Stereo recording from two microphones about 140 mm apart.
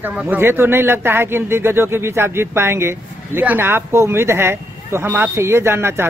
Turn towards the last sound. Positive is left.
turn(degrees=-15)  # may be behind; listen again after turning